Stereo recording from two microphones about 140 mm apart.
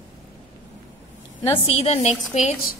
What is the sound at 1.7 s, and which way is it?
Speech, 50° left (ahead or behind).